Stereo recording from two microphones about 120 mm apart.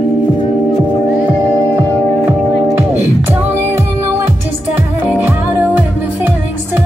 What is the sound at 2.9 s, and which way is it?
Music, 20° right (ahead or behind).